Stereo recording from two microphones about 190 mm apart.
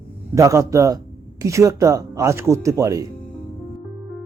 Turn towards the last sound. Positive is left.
turn(degrees=-15)  # may be behind; listen again after turning